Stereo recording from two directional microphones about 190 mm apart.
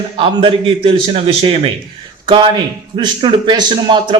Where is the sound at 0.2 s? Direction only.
25° right (ahead or behind).